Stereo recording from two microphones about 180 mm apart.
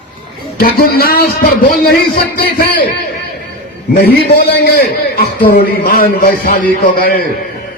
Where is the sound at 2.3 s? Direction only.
55° left (ahead or behind).